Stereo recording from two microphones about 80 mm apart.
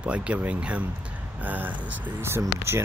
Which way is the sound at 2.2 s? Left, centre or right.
Right.